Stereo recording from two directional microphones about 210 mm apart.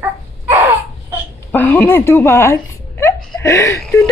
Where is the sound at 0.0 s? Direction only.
15° right (ahead or behind).